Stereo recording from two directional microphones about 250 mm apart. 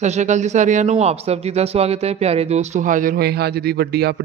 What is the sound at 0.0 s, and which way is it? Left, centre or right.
Speech, right.